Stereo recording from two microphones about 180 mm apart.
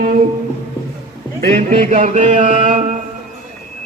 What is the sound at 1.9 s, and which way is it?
Music, 45° right (ahead or behind).